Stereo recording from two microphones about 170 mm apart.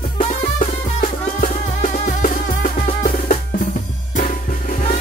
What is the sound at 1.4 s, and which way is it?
Drum, 50° left (ahead or behind).